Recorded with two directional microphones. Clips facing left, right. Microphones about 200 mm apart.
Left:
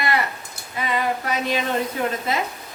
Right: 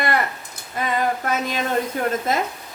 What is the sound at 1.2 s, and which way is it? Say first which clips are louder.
Speech: even; 45° right (ahead or behind).